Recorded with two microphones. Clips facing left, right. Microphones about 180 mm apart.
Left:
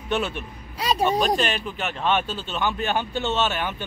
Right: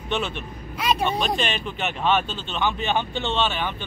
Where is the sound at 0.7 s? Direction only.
35° left (ahead or behind).